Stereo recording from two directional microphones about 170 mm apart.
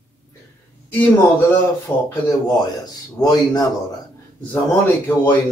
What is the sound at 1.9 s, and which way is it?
Speech, 10° left (ahead or behind).